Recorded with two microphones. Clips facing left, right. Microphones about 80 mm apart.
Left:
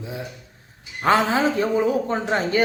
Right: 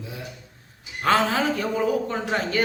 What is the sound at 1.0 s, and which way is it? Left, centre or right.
A woman's voice, centre.